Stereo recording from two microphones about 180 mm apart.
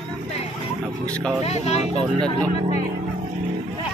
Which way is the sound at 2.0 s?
30° right (ahead or behind).